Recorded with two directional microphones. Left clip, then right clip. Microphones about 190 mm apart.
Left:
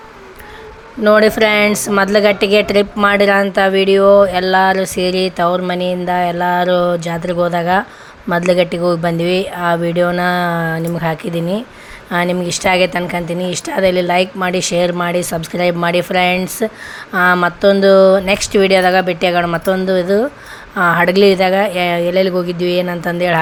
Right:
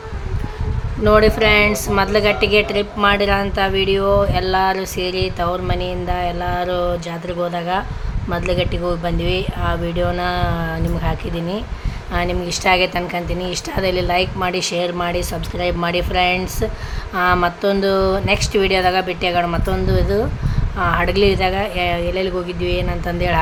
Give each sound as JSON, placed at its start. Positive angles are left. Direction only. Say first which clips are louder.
{"t": 1.0, "sound": "a woman's voice", "louder": "left 3 dB", "side_deg": 30}